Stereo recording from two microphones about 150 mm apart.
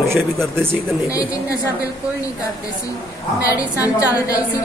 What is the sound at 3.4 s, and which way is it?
A woman's voice, 20° left (ahead or behind).